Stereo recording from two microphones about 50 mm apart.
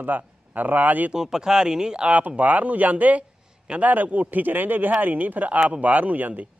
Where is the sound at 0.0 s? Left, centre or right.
Right.